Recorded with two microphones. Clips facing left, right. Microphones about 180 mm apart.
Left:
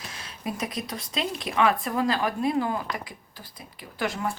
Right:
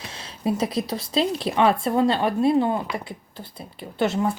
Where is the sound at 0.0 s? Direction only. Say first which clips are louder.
Right 7 dB; 30° right (ahead or behind).